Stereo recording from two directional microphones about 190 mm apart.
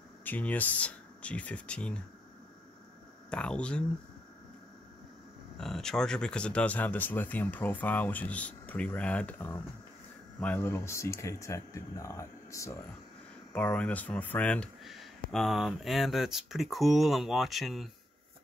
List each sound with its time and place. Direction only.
0.2 s speech: 10° left (ahead or behind)
3.3 s speech: 5° left (ahead or behind)
5.6 s speech: 5° left (ahead or behind)